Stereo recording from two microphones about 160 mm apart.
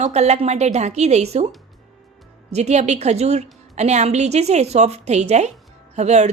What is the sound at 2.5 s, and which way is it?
A woman's voice, 45° right (ahead or behind).